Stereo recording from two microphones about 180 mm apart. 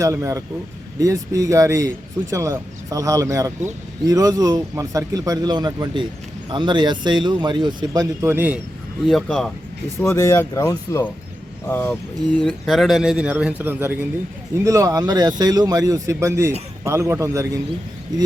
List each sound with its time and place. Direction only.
0.0 s speech: 15° right (ahead or behind)
9.0 s a man's voice: centre (ahead or behind)
10.1 s a man's voice: 15° left (ahead or behind); by 17.6 s 15° right (ahead or behind)